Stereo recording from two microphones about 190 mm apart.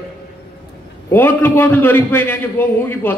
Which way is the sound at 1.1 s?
10° left (ahead or behind).